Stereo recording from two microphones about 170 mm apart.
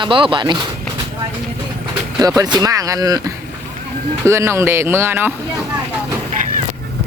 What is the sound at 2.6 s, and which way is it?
Speech, 20° right (ahead or behind).